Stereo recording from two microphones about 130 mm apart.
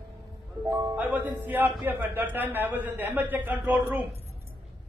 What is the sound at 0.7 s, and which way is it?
Speech, 10° right (ahead or behind).